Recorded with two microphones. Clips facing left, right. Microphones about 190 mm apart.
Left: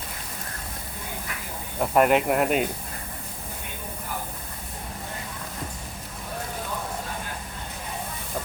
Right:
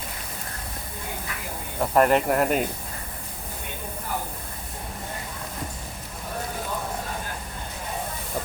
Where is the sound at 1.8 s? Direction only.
5° left (ahead or behind).